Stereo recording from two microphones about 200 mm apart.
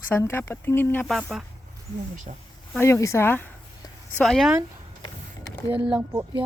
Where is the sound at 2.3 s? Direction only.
35° right (ahead or behind).